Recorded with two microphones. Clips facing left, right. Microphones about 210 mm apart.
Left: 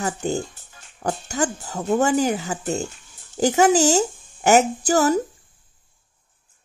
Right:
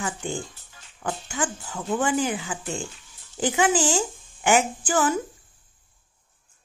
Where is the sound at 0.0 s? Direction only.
40° left (ahead or behind).